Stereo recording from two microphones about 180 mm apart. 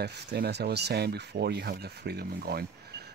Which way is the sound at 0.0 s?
65° right (ahead or behind).